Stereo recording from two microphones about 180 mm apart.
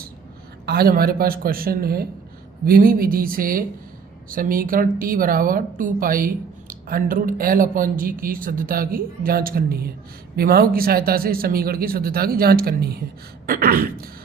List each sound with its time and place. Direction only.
0.6 s a woman's voice: 60° right (ahead or behind)